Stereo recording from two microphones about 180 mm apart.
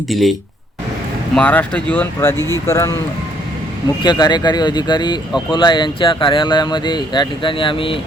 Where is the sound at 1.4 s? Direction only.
5° left (ahead or behind).